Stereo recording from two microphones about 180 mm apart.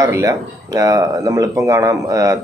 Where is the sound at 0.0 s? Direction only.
20° right (ahead or behind).